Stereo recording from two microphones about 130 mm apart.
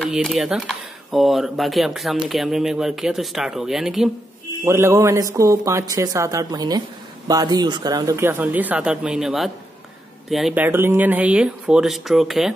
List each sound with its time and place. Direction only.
0.1 s speech: centre (ahead or behind)
4.6 s a woman's voice: 20° right (ahead or behind)
8.3 s speech: 15° right (ahead or behind)
10.5 s speech: 15° right (ahead or behind)